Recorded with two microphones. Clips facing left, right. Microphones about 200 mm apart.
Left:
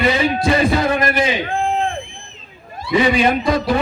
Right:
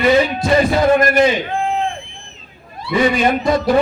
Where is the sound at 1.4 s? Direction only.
45° left (ahead or behind).